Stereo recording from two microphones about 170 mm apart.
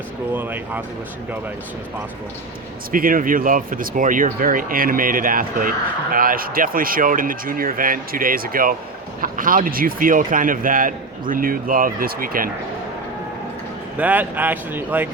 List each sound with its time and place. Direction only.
0.3 s speech: 10° right (ahead or behind)
2.9 s speech: 55° right (ahead or behind)
14.0 s speech: 10° right (ahead or behind)